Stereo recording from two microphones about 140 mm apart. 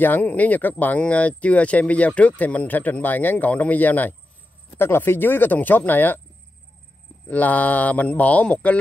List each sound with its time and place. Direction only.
0.0 s speech: 15° left (ahead or behind)
7.2 s speech: 10° left (ahead or behind)